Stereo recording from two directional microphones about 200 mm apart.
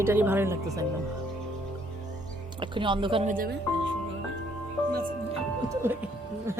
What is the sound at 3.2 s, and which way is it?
Speech, 45° right (ahead or behind).